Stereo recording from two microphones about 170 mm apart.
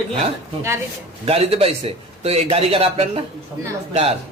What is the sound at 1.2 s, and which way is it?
A man's voice, 35° right (ahead or behind).